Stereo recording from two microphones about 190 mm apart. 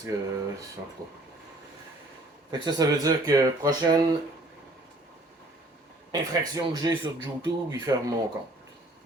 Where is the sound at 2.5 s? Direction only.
20° right (ahead or behind).